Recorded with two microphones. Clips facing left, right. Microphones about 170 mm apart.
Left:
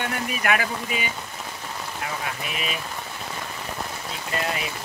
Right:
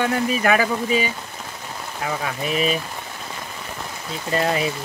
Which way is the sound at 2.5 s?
35° right (ahead or behind).